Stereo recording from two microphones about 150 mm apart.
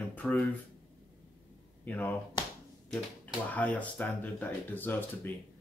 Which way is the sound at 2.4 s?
30° left (ahead or behind).